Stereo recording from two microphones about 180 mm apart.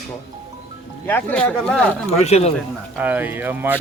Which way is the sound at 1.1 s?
10° left (ahead or behind).